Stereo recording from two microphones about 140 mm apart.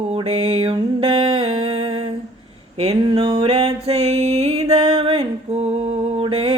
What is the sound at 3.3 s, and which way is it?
Music, 45° right (ahead or behind).